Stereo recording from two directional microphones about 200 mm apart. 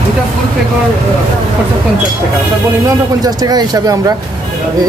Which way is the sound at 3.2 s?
20° right (ahead or behind).